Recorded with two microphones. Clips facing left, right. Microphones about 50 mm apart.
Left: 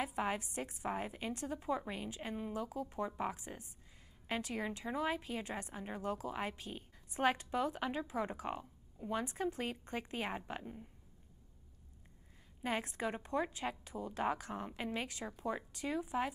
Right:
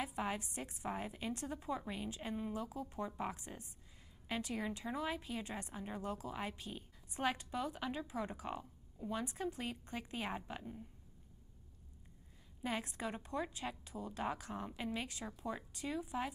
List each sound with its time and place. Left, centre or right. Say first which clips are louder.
0.2 s a sound: left 3 dB; left
0.6 s a woman's voice: left 3 dB; left
4.6 s a woman's voice: left 3 dB; centre
7.2 s a woman's voice: left 5 dB; left
12.6 s a woman's voice: left 3 dB; left